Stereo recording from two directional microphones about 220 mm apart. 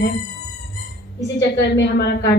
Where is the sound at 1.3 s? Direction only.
50° left (ahead or behind).